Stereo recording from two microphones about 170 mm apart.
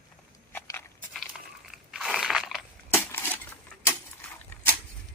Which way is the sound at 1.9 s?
Centre (ahead or behind).